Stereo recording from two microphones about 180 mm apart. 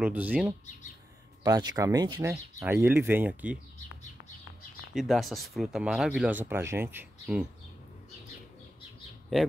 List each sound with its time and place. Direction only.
0.0 s speech: 10° right (ahead or behind)
1.4 s speech: 20° right (ahead or behind)
2.6 s speech: 10° right (ahead or behind)
4.9 s speech: centre (ahead or behind)